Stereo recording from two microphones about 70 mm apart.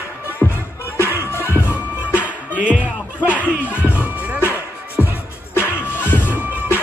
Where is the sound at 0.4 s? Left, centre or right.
Left.